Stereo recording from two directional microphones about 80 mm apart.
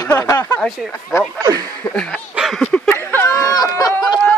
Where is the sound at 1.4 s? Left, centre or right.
Right.